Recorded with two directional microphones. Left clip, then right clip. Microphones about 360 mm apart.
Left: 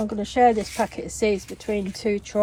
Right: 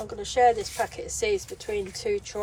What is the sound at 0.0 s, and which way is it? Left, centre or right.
Speech, left.